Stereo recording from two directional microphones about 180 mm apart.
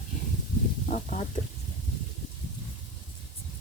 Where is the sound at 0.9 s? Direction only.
45° left (ahead or behind).